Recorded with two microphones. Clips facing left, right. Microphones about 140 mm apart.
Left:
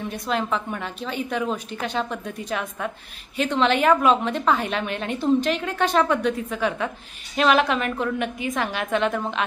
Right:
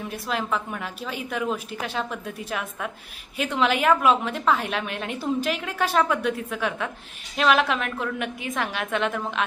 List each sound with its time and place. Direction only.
0.0 s a woman's voice: 5° right (ahead or behind)